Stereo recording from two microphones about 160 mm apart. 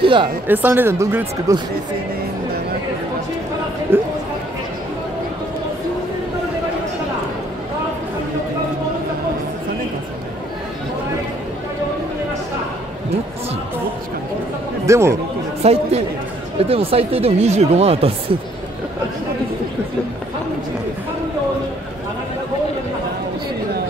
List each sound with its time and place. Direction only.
0.0 s speech: 30° right (ahead or behind)
0.5 s speech: 10° right (ahead or behind)
3.9 s speech: 15° right (ahead or behind)
14.9 s speech: 15° right (ahead or behind)
15.6 s speech: 40° right (ahead or behind)